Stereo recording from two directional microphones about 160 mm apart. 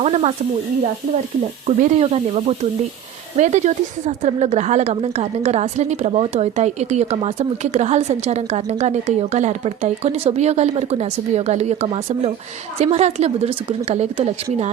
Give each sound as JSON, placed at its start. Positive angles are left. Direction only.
{"t": 0.0, "sound": "speech", "side_deg": -40}
{"t": 1.6, "sound": "a woman's voice", "side_deg": -40}